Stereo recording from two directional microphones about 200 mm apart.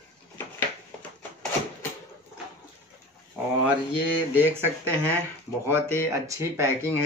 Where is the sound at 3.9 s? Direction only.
10° right (ahead or behind).